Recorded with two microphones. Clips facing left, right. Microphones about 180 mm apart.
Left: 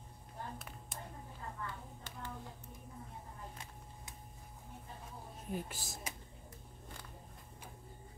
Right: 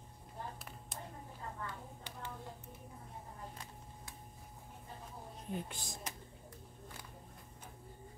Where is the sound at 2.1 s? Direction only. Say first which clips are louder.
Left 1 dB; 15° right (ahead or behind).